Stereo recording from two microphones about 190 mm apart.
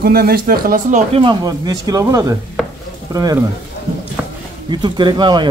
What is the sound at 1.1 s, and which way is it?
Speech, 25° right (ahead or behind).